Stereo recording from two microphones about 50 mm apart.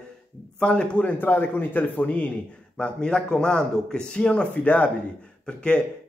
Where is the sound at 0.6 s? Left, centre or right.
Centre.